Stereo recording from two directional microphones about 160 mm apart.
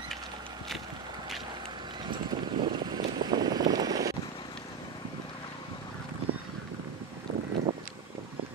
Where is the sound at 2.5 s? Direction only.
25° right (ahead or behind).